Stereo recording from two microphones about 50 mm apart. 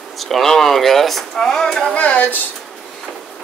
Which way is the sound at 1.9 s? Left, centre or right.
Left.